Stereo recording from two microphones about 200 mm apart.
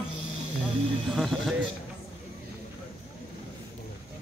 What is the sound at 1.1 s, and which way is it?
Speech, centre (ahead or behind).